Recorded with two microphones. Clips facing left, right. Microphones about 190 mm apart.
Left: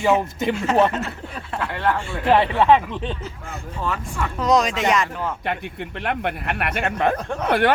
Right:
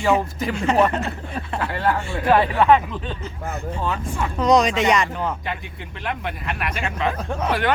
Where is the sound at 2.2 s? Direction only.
25° left (ahead or behind).